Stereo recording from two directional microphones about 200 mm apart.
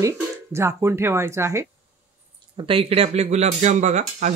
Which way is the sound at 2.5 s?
25° right (ahead or behind).